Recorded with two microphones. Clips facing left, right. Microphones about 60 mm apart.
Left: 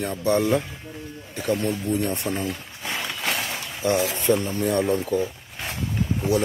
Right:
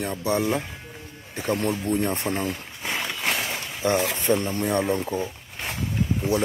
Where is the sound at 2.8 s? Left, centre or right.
Centre.